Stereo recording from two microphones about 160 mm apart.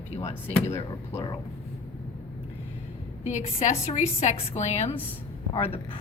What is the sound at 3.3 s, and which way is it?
A woman's voice, 45° left (ahead or behind).